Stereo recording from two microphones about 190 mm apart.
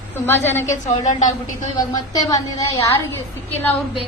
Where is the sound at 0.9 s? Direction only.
40° left (ahead or behind).